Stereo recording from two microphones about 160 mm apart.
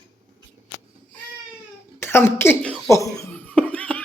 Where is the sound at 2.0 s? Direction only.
15° left (ahead or behind).